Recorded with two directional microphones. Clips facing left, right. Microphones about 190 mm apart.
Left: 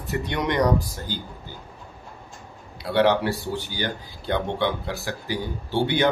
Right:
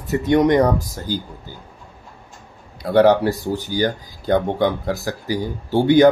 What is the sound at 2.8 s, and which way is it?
Speech, 45° right (ahead or behind).